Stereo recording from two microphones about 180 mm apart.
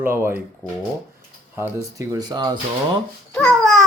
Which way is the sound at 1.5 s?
15° right (ahead or behind).